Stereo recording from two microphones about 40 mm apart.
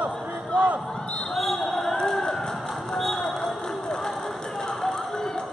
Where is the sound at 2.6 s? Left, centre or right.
Centre.